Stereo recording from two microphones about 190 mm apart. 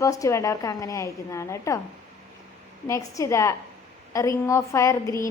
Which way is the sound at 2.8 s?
15° left (ahead or behind).